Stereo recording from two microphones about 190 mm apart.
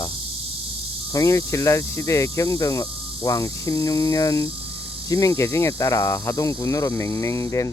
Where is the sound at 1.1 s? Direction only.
15° left (ahead or behind).